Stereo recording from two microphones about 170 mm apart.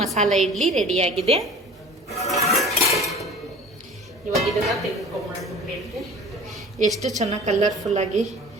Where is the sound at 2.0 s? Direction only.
40° left (ahead or behind).